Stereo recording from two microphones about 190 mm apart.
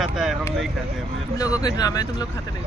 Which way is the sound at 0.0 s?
Centre (ahead or behind).